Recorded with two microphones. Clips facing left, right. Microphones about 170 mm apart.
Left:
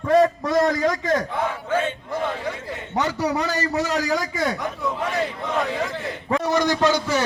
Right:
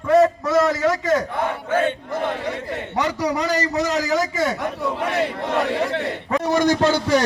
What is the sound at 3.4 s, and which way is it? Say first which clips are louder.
Speech: right 2 dB; 40° right (ahead or behind).